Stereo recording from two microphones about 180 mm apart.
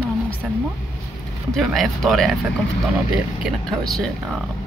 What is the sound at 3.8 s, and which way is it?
Speech, 5° left (ahead or behind).